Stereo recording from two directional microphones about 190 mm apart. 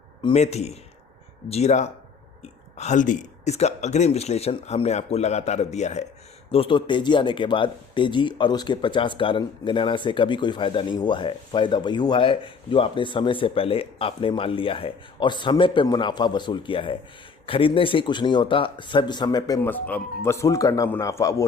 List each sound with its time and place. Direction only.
0.2 s speech: 30° left (ahead or behind)